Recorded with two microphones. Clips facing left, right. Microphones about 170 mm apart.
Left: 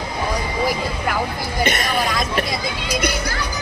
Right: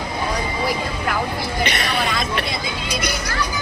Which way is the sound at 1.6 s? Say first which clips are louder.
Left 3 dB; 45° left (ahead or behind).